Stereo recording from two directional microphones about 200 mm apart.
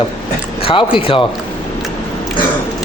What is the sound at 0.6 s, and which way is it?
Speech, 25° left (ahead or behind).